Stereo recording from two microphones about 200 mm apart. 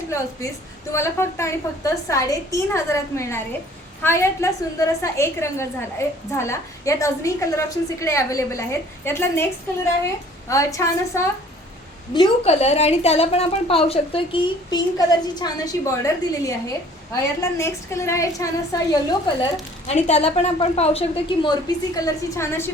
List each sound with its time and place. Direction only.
0.1 s a woman's voice: 15° left (ahead or behind)
10.5 s a woman's voice: 15° left (ahead or behind)
12.1 s a woman's voice: 30° left (ahead or behind)
19.9 s a woman's voice: 35° left (ahead or behind); by 22.7 s 10° left (ahead or behind)